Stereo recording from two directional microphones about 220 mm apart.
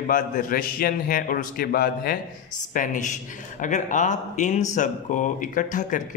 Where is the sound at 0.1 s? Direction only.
40° left (ahead or behind).